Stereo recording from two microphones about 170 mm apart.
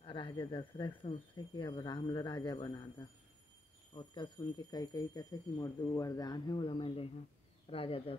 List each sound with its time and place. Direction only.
0.0 s speech: 30° left (ahead or behind)